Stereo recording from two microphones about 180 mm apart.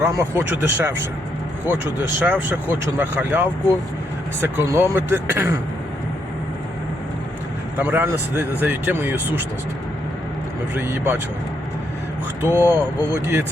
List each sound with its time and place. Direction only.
0.0 s speech: 15° right (ahead or behind)
7.8 s speech: 10° right (ahead or behind)
10.8 s speech: 15° right (ahead or behind)
12.4 s speech: 10° right (ahead or behind)